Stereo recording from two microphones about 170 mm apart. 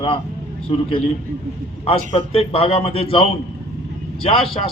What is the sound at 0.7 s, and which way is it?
Speech, 30° left (ahead or behind).